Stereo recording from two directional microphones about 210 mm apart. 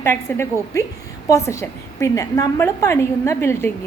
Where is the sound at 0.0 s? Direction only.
10° left (ahead or behind).